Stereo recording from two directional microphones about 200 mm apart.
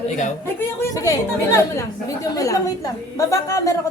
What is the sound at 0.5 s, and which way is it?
A woman's voice, 15° left (ahead or behind).